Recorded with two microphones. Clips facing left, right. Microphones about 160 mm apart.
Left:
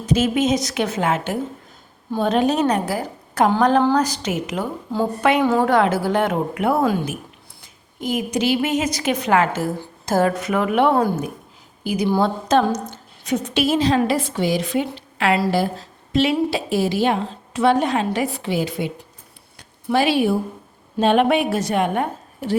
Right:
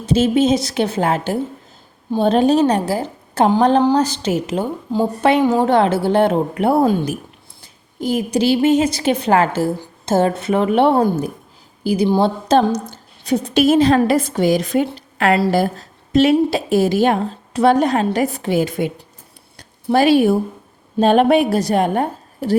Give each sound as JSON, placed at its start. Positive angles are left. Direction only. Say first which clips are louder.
{"t": 0.0, "sound": "a woman's voice", "louder": "right 4 dB", "side_deg": -30}
{"t": 5.4, "sound": "a woman's voice", "louder": "right 2 dB", "side_deg": -15}
{"t": 5.6, "sound": "a woman's voice", "louder": "right 3 dB", "side_deg": -25}
{"t": 14.9, "sound": "a sound", "louder": "right 3 dB", "side_deg": -45}
{"t": 16.1, "sound": "a woman's voice", "louder": "right 5 dB", "side_deg": -45}
{"t": 19.5, "sound": "a sound", "louder": "right 4 dB", "side_deg": -40}
{"t": 21.0, "sound": "a woman's voice", "louder": "right 4 dB", "side_deg": -40}